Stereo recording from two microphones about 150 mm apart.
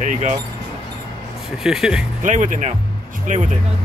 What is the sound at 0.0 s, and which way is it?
Speech, 55° right (ahead or behind).